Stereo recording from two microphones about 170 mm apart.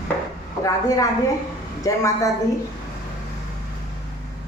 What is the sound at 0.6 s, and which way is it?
A woman's voice, 20° left (ahead or behind).